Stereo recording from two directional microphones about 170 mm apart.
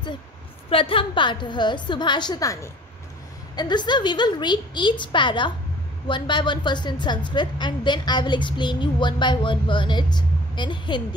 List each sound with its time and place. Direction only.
0.7 s a woman's voice: 30° left (ahead or behind)